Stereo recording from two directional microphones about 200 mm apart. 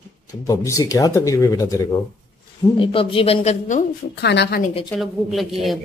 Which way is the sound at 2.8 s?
25° left (ahead or behind).